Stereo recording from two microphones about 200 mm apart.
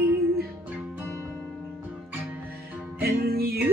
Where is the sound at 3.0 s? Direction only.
50° right (ahead or behind).